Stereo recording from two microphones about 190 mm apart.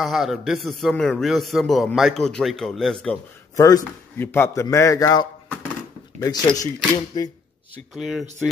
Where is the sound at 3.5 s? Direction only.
15° left (ahead or behind).